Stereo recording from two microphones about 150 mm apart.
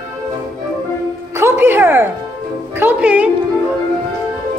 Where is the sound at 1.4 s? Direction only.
15° right (ahead or behind).